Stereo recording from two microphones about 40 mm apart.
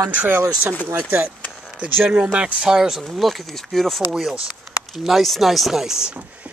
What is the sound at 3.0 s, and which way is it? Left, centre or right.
Speech, centre.